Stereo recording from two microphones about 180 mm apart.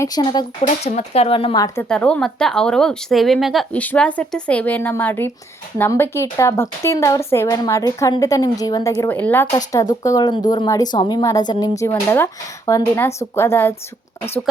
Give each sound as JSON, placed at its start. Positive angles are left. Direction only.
{"t": 0.0, "sound": "speech", "side_deg": 20}
{"t": 0.9, "sound": "speech", "side_deg": 35}
{"t": 1.6, "sound": "a woman's voice", "side_deg": 15}
{"t": 9.5, "sound": "a woman's voice", "side_deg": 20}